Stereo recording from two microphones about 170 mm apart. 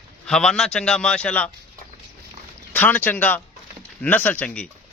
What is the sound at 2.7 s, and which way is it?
A man's voice, 10° left (ahead or behind).